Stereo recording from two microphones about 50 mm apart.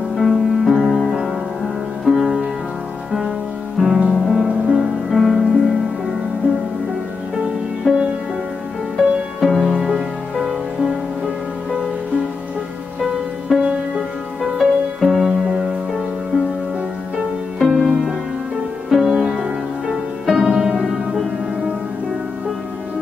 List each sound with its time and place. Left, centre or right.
0.1 s music: centre
3.8 s music: centre
7.8 s music: centre
8.9 s music: centre
13.5 s music: centre
17.6 s music: centre